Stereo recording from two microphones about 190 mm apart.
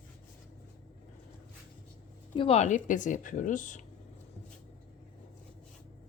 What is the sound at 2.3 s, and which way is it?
Speech, 30° left (ahead or behind).